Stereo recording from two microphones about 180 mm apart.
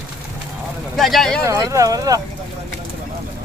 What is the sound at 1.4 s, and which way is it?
Speech, 20° right (ahead or behind).